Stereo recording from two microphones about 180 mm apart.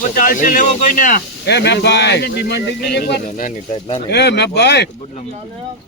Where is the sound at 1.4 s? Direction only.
70° left (ahead or behind); by 3.5 s 55° left (ahead or behind).